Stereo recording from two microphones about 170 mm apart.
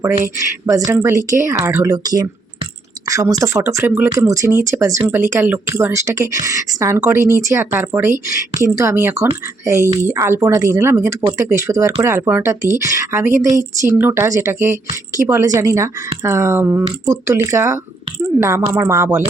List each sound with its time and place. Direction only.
0.6 s speech: 15° right (ahead or behind)